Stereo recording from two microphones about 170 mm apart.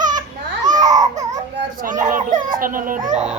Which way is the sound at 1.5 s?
50° right (ahead or behind).